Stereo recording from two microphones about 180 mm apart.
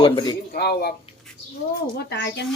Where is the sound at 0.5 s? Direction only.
60° left (ahead or behind).